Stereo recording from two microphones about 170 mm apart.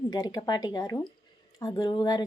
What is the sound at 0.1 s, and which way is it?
Speech, 25° left (ahead or behind).